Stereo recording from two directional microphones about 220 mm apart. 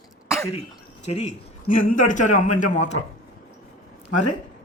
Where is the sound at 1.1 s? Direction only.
30° left (ahead or behind).